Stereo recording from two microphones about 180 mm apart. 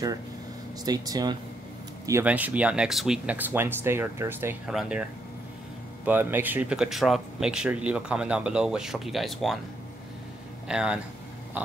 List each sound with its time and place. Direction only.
0.8 s speech: 20° right (ahead or behind)
2.0 s speech: 10° right (ahead or behind)
6.0 s speech: 10° right (ahead or behind)
10.7 s speech: 5° right (ahead or behind)